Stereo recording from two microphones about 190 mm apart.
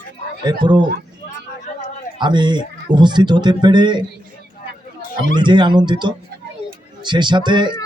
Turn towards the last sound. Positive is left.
turn(degrees=-25)  # may be behind; listen again after turning